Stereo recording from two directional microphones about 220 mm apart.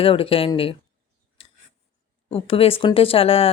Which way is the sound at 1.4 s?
25° left (ahead or behind).